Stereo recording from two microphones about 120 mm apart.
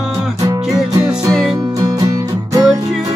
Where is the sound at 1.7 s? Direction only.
30° right (ahead or behind).